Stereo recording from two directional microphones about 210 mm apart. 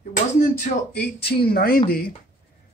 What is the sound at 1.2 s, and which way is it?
Speech, 45° left (ahead or behind).